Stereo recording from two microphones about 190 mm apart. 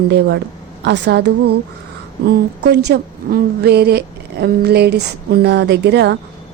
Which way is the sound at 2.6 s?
60° right (ahead or behind).